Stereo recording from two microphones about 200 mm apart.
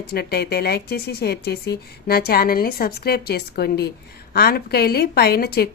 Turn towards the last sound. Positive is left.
turn(degrees=50)  # may be behind; listen again after turning